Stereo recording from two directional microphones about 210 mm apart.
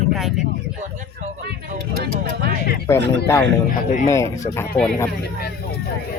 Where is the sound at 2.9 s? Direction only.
10° left (ahead or behind).